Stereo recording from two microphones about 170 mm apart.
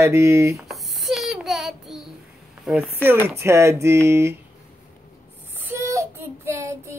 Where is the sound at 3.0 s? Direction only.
15° right (ahead or behind).